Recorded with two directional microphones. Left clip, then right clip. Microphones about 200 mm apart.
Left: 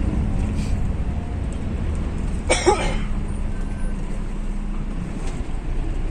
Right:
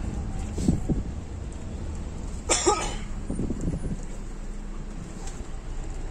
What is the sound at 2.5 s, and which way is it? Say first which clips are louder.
Cough: left 5 dB; 30° right (ahead or behind).